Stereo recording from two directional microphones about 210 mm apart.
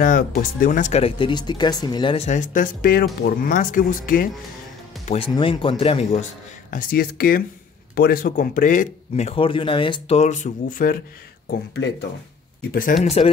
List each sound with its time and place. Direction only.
0.0 s speech: 45° left (ahead or behind); by 6.2 s 30° left (ahead or behind)
6.7 s speech: 45° left (ahead or behind)
11.5 s speech: 50° left (ahead or behind)
13.2 s speech: 30° left (ahead or behind)